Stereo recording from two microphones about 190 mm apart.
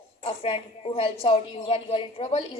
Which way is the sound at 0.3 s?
30° left (ahead or behind).